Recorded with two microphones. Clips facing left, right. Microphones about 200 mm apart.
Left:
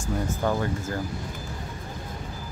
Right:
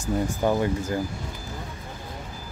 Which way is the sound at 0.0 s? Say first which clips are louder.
Right 3 dB; 15° right (ahead or behind).